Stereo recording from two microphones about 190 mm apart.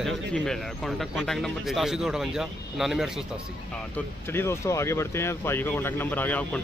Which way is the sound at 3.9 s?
15° left (ahead or behind).